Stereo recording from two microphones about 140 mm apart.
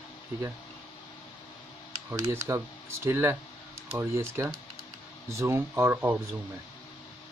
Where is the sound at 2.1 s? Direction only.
20° right (ahead or behind).